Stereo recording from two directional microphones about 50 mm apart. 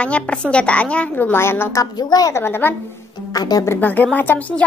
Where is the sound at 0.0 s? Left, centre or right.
Left.